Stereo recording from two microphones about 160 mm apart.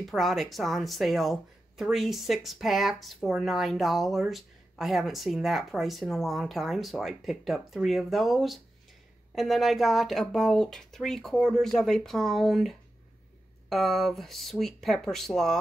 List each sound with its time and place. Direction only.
0.0 s speech: centre (ahead or behind)